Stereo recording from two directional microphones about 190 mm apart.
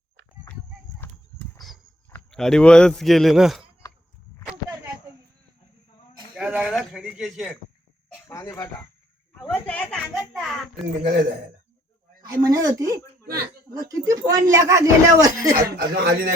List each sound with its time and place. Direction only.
0.9 s horse: 15° left (ahead or behind)
2.0 s a man's voice: 5° left (ahead or behind)
6.3 s a sound: 5° right (ahead or behind)
8.3 s a child's voice: 15° left (ahead or behind); by 10.8 s centre (ahead or behind)
12.2 s speech: 20° right (ahead or behind)
13.2 s a sound: 55° right (ahead or behind)
13.7 s speech: 20° right (ahead or behind)
15.7 s speech: 55° right (ahead or behind)